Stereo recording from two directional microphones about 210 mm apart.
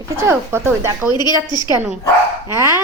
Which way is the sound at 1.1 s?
20° left (ahead or behind).